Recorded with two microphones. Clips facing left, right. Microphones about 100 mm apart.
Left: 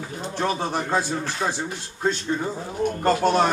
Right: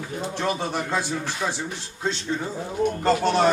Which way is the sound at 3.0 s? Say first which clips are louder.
Left 2 dB; 45° left (ahead or behind).